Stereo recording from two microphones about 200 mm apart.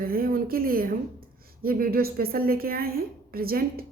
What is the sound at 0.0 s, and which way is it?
Speech, 45° right (ahead or behind).